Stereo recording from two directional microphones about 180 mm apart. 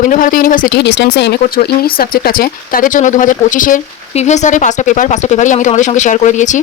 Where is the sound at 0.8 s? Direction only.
70° left (ahead or behind).